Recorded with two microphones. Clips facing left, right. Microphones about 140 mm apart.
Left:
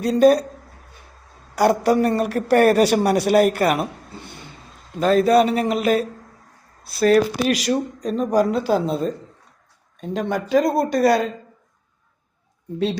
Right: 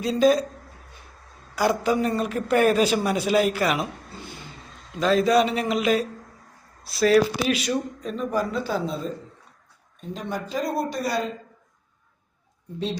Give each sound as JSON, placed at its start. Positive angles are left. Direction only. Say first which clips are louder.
{"t": 0.0, "sound": "speech", "louder": "left 5 dB", "side_deg": 60}
{"t": 1.5, "sound": "speech", "louder": "left 5 dB", "side_deg": 65}
{"t": 4.9, "sound": "speech", "louder": "left 4 dB", "side_deg": 50}
{"t": 8.2, "sound": "speech", "louder": "left 7 dB", "side_deg": 75}
{"t": 10.0, "sound": "speech", "louder": "left 7 dB", "side_deg": 85}